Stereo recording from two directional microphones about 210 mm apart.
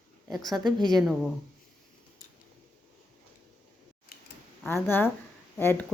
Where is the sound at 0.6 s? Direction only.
20° right (ahead or behind).